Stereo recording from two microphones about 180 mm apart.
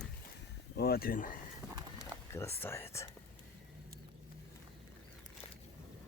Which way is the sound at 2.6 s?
15° left (ahead or behind).